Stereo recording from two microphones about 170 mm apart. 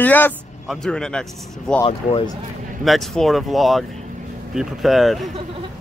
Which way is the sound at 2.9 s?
Centre (ahead or behind).